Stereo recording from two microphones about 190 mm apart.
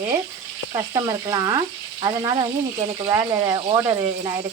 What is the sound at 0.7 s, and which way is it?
Speech, 20° right (ahead or behind).